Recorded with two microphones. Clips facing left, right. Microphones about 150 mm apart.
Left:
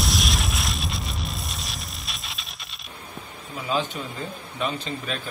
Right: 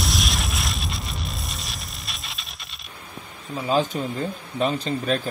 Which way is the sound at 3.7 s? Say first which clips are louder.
Right 5 dB; 40° right (ahead or behind).